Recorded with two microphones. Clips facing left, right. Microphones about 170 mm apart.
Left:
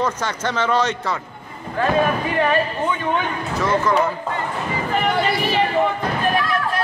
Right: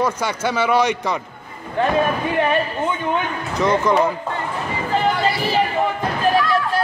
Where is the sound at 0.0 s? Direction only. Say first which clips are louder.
Right 2 dB; 10° right (ahead or behind).